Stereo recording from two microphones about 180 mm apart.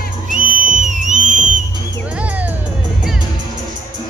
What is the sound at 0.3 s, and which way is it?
Music, 45° right (ahead or behind).